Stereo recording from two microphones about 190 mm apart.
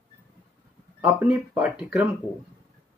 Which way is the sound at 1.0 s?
5° right (ahead or behind).